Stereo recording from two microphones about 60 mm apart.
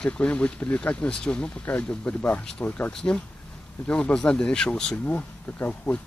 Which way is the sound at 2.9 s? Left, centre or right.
Centre.